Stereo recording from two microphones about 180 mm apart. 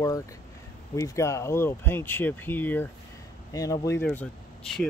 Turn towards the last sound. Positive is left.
turn(degrees=5)  # may be behind; listen again after turning